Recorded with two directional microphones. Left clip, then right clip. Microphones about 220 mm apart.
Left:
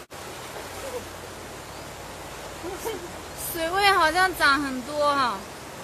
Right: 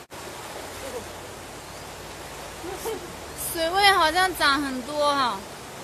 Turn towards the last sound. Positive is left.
turn(degrees=-5)  # may be behind; listen again after turning